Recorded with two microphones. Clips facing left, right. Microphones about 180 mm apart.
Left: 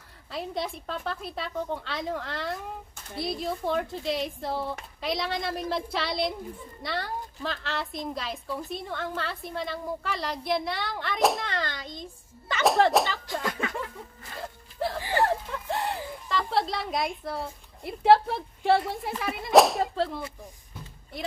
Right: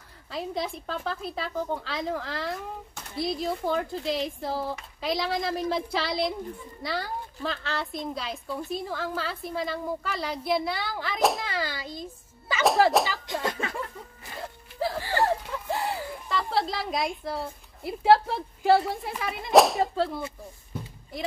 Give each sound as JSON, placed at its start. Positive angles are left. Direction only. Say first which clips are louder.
{"t": 0.3, "sound": "a woman's voice", "louder": "right 1 dB", "side_deg": 0}
{"t": 13.3, "sound": "a child's voice", "louder": "right 1 dB", "side_deg": -25}
{"t": 14.4, "sound": "music", "louder": "right 1 dB", "side_deg": 0}
{"t": 15.2, "sound": "a woman's voice", "louder": "right 1 dB", "side_deg": 0}